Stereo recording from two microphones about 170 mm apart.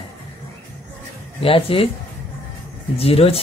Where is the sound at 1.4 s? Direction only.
35° left (ahead or behind).